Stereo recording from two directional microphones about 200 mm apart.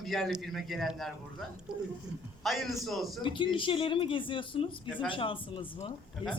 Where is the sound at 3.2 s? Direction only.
25° left (ahead or behind).